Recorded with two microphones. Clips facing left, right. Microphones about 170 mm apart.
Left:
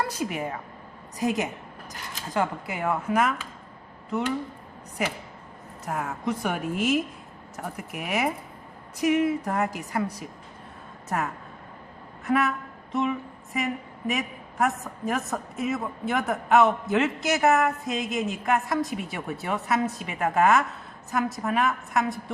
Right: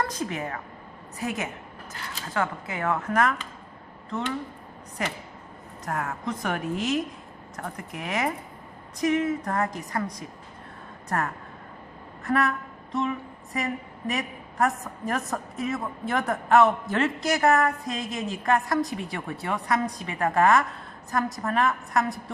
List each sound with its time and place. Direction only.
0.0 s speech: 10° left (ahead or behind)
5.8 s speech: 10° left (ahead or behind)
12.2 s a sound: centre (ahead or behind)
14.1 s a woman's voice: centre (ahead or behind)